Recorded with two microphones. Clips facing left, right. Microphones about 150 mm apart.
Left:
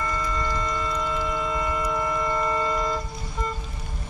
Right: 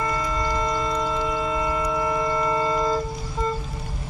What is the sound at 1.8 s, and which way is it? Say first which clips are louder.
Music: right 2 dB; 20° right (ahead or behind).